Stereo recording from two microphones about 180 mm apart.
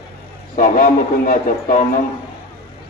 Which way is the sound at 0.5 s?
50° left (ahead or behind).